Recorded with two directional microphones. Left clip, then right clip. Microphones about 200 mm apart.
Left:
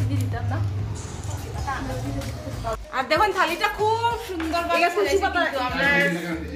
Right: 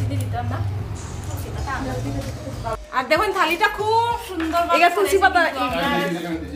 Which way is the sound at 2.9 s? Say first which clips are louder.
Right 2 dB; centre (ahead or behind).